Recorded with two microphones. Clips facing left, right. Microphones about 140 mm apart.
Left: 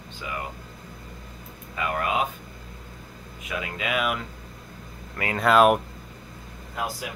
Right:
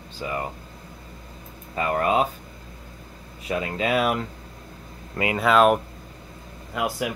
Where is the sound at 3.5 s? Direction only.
35° right (ahead or behind).